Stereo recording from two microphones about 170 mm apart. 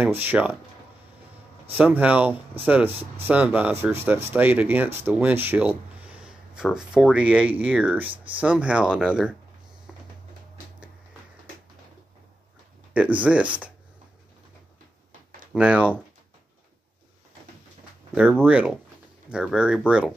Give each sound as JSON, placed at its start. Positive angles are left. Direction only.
{"t": 0.0, "sound": "speech", "side_deg": -10}
{"t": 1.7, "sound": "speech", "side_deg": -10}
{"t": 2.9, "sound": "speech", "side_deg": -35}
{"t": 3.3, "sound": "speech", "side_deg": -10}
{"t": 12.9, "sound": "speech", "side_deg": -10}
{"t": 15.5, "sound": "speech", "side_deg": -5}
{"t": 18.4, "sound": "speech", "side_deg": -10}